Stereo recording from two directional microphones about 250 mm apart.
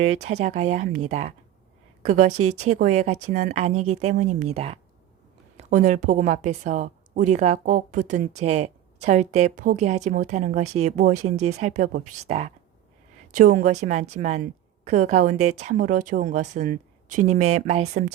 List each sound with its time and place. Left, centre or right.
0.3 s a woman's voice: right
2.6 s a woman's voice: right